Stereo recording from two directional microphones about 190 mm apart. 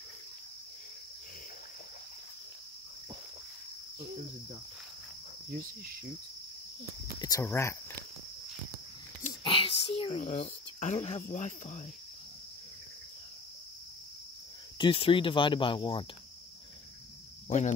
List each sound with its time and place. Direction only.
7.2 s speech: 20° left (ahead or behind)
9.4 s speech: 30° left (ahead or behind)
14.8 s speech: 30° left (ahead or behind)
17.5 s speech: 40° left (ahead or behind)